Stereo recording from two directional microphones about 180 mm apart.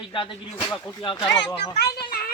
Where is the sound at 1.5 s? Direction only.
60° left (ahead or behind).